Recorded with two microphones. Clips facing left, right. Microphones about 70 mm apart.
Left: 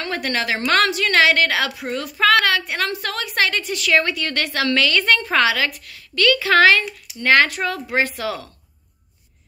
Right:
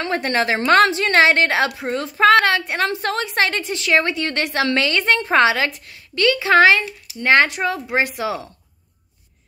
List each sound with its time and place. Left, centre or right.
0.0 s a woman's voice: right